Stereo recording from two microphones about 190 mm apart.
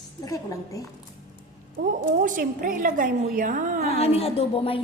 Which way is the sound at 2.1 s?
45° right (ahead or behind).